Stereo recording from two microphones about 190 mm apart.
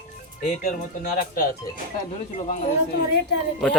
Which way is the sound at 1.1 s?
50° left (ahead or behind).